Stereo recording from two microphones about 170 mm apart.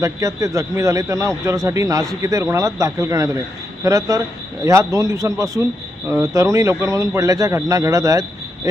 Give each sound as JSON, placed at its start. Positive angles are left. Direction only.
{"t": 0.0, "sound": "a man's voice", "side_deg": -20}